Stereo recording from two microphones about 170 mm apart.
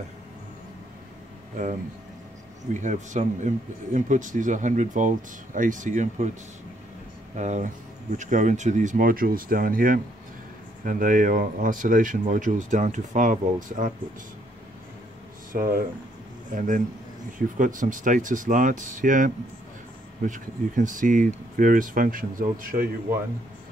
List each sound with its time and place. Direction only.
2.7 s speech: 45° right (ahead or behind)
7.3 s speech: 45° right (ahead or behind)
15.5 s speech: 55° right (ahead or behind)